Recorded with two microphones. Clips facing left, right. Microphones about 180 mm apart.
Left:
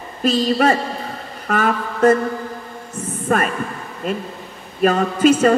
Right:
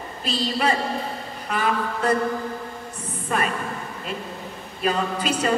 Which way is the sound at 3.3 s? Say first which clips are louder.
Left 5 dB; 50° left (ahead or behind).